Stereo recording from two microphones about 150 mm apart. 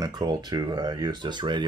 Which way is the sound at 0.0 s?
25° right (ahead or behind).